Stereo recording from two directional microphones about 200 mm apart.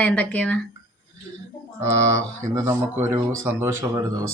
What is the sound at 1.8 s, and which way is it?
Speech, 15° right (ahead or behind).